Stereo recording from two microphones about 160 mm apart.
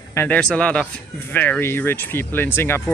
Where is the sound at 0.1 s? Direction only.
10° left (ahead or behind).